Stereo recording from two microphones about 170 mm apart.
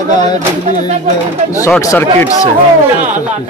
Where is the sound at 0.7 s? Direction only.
40° right (ahead or behind).